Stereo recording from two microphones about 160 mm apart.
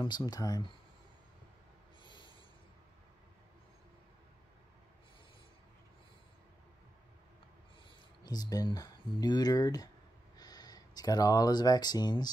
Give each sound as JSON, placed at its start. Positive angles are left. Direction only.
{"t": 0.0, "sound": "speech", "side_deg": 30}
{"t": 2.0, "sound": "a sound", "side_deg": 30}
{"t": 8.2, "sound": "speech", "side_deg": 25}